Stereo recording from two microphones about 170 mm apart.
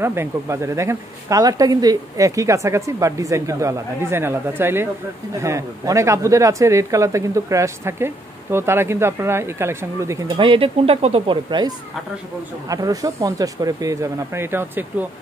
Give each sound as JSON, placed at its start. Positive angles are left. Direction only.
{"t": 0.0, "sound": "speech", "side_deg": -15}
{"t": 10.3, "sound": "speech", "side_deg": -30}